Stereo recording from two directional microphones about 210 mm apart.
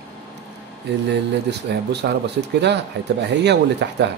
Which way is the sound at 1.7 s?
50° right (ahead or behind).